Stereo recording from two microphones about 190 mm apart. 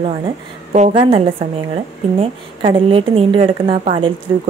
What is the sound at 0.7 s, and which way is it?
A woman's voice, 35° right (ahead or behind).